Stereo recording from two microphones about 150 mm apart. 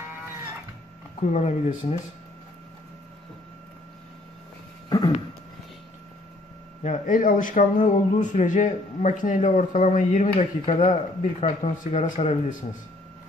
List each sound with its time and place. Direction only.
1.2 s speech: 50° left (ahead or behind)
4.8 s a sound: 25° left (ahead or behind)
6.8 s a man's voice: 55° left (ahead or behind)